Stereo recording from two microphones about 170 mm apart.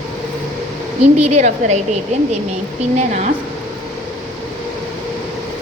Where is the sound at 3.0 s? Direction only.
45° right (ahead or behind).